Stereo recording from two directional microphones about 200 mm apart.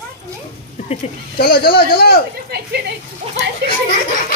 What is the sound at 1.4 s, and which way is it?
Speech, 50° left (ahead or behind).